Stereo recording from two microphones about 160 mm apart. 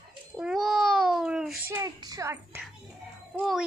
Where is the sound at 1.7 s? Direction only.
20° right (ahead or behind).